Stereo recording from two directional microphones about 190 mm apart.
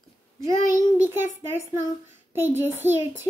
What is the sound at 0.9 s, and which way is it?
A child's voice, 10° right (ahead or behind).